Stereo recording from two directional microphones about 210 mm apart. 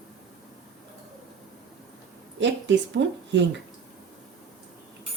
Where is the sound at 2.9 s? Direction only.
55° right (ahead or behind).